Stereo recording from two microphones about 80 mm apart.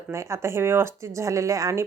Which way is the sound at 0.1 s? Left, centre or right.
Right.